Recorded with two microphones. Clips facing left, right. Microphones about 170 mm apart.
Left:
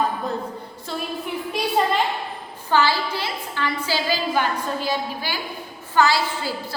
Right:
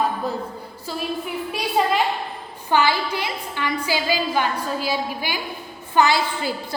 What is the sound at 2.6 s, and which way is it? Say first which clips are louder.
A woman's voice: even; 15° right (ahead or behind).